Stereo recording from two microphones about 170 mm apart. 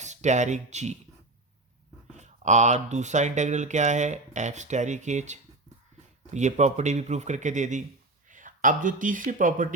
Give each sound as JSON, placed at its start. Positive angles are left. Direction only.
{"t": 0.0, "sound": "speech", "side_deg": -45}
{"t": 2.1, "sound": "speech", "side_deg": -45}